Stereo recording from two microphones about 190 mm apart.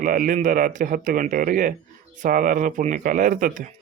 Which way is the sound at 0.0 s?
45° right (ahead or behind).